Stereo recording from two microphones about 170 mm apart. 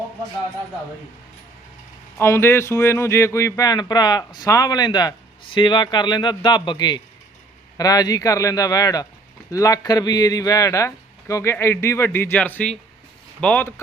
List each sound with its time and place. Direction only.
2.1 s speech: 15° left (ahead or behind)